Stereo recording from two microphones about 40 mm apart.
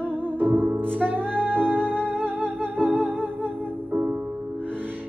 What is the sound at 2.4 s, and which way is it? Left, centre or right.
Humming, right.